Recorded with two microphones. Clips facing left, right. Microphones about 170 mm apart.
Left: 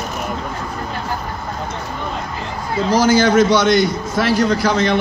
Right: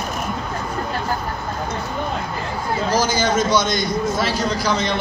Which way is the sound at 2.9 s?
65° left (ahead or behind).